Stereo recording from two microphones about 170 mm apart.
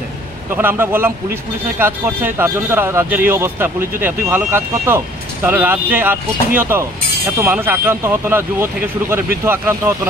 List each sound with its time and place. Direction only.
0.6 s speech: 15° right (ahead or behind)